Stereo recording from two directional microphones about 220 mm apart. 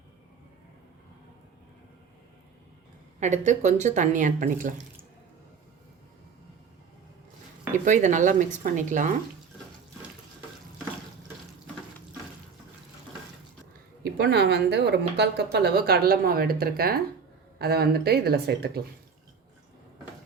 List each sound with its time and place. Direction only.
3.2 s speech: 30° right (ahead or behind)
7.9 s speech: 35° right (ahead or behind)
14.0 s speech: 50° right (ahead or behind)